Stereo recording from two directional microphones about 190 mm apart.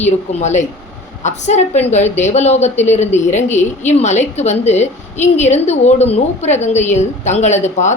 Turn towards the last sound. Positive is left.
turn(degrees=40)  # may be behind; listen again after turning